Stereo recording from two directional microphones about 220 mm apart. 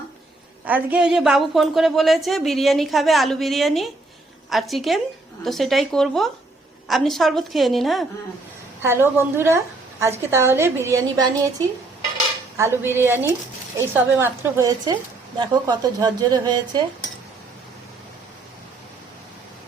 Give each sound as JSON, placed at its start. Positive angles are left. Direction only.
{"t": 0.6, "sound": "a woman's voice", "side_deg": -5}
{"t": 8.8, "sound": "a woman's voice", "side_deg": -10}
{"t": 12.5, "sound": "a woman's voice", "side_deg": -10}